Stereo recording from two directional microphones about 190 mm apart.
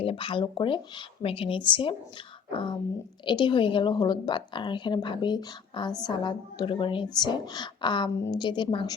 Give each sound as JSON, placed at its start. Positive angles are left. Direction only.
{"t": 0.0, "sound": "a woman's voice", "side_deg": 30}